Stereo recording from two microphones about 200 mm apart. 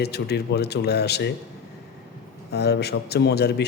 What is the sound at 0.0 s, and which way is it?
A man's voice, 55° left (ahead or behind).